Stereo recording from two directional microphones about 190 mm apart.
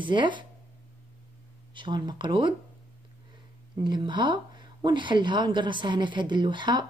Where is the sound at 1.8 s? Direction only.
25° right (ahead or behind).